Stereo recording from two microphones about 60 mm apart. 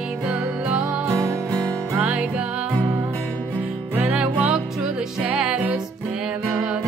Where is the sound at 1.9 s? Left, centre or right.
Right.